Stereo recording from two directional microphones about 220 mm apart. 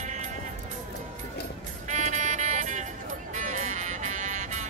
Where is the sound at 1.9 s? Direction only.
35° right (ahead or behind).